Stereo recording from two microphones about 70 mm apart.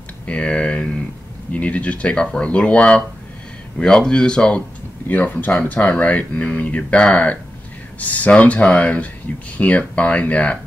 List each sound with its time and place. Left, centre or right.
0.3 s speech: centre
5.0 s speech: left